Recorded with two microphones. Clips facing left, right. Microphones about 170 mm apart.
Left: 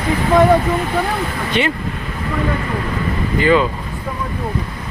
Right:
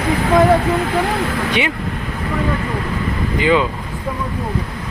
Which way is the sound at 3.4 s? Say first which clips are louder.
Left 1 dB; 15° right (ahead or behind).